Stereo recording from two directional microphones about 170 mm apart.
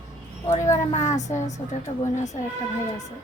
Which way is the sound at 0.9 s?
45° left (ahead or behind).